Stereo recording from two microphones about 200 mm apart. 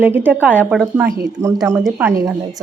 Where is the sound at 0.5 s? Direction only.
Centre (ahead or behind).